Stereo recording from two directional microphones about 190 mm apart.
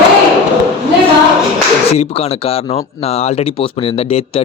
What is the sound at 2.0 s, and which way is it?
Speech, 30° left (ahead or behind).